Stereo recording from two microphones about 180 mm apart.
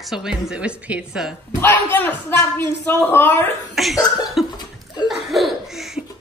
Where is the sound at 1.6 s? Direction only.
10° left (ahead or behind).